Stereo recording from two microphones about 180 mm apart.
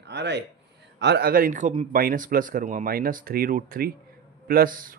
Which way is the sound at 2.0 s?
55° right (ahead or behind).